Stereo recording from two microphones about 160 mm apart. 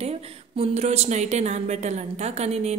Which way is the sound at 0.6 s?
40° right (ahead or behind).